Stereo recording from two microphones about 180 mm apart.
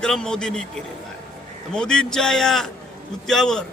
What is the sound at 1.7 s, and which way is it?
A man's voice, 5° left (ahead or behind).